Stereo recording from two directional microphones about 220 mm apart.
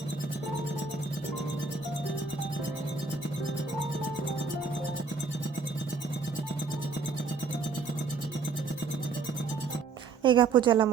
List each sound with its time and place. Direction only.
10.2 s a woman's voice: 20° right (ahead or behind)